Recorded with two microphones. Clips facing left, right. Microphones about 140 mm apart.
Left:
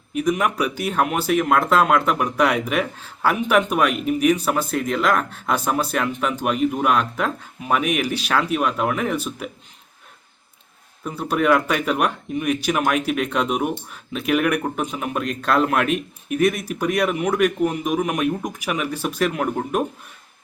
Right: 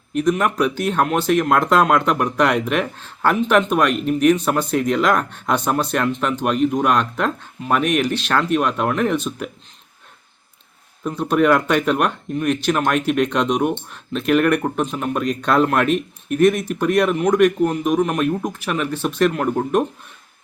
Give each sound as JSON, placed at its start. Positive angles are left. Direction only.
{"t": 0.1, "sound": "speech", "side_deg": 10}
{"t": 11.0, "sound": "speech", "side_deg": 5}